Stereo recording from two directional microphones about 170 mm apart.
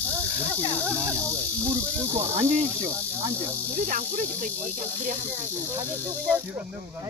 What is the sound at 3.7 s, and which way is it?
Speech, 50° right (ahead or behind).